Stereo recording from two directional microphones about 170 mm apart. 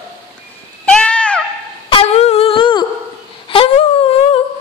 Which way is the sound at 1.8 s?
35° left (ahead or behind).